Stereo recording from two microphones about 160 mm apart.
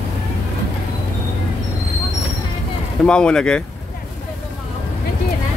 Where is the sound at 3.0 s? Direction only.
5° left (ahead or behind).